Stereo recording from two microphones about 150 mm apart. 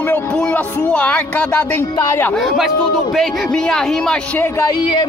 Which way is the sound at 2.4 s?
Centre (ahead or behind).